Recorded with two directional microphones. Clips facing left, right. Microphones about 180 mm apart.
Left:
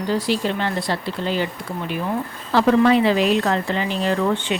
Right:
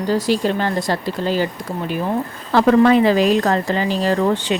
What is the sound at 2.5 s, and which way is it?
Speech, 50° right (ahead or behind).